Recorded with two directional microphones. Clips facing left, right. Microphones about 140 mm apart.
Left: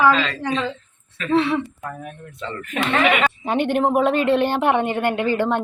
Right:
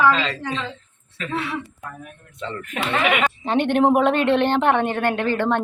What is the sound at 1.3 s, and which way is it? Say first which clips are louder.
Speech: left 9 dB; 25° left (ahead or behind).